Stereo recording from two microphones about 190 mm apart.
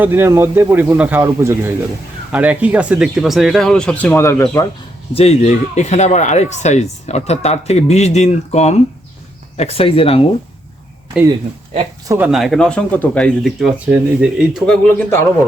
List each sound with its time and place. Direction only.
0.0 s speech: 10° right (ahead or behind); by 4.6 s 15° left (ahead or behind)
5.1 s speech: 35° left (ahead or behind)
12.0 s speech: 15° right (ahead or behind)
12.3 s speech: centre (ahead or behind)
14.9 s a man's voice: 15° left (ahead or behind)